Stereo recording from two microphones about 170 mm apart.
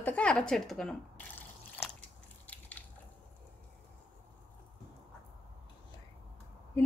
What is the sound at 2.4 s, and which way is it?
Biting, 10° left (ahead or behind).